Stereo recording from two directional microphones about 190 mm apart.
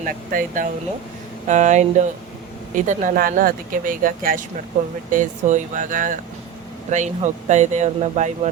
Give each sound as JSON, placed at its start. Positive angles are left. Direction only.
{"t": 0.0, "sound": "speech", "side_deg": -45}